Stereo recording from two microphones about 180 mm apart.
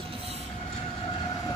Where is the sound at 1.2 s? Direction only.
25° left (ahead or behind).